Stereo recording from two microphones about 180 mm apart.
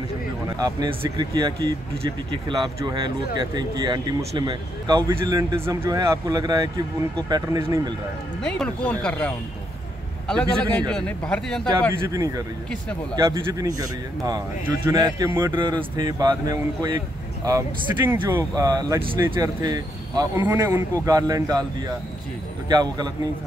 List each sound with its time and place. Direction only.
0.6 s speech: 20° right (ahead or behind)
8.5 s speech: 5° left (ahead or behind)
13.1 s speech: 20° right (ahead or behind)